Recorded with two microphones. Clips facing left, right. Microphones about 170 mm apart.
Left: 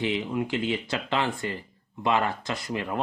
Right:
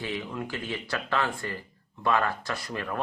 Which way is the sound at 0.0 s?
20° left (ahead or behind).